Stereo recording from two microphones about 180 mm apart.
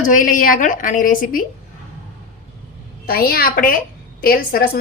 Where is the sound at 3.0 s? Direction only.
55° left (ahead or behind).